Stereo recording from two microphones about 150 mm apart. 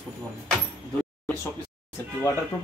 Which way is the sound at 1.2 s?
10° left (ahead or behind).